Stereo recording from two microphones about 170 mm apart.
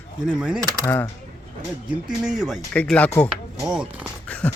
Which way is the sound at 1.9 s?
5° right (ahead or behind).